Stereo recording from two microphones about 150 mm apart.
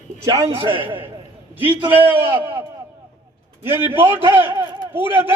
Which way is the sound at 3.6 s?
15° right (ahead or behind).